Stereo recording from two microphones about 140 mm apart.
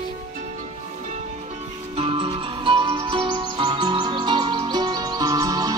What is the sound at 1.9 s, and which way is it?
Music, 40° right (ahead or behind).